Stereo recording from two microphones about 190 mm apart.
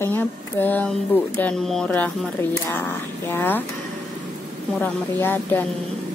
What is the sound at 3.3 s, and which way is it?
Speech, 10° left (ahead or behind).